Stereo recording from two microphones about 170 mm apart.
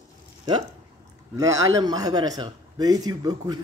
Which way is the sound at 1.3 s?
20° right (ahead or behind).